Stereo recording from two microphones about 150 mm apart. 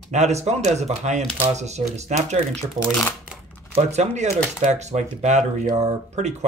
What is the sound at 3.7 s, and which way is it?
Speech, 50° right (ahead or behind).